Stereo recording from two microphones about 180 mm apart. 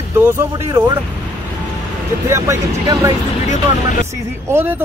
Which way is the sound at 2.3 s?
15° right (ahead or behind).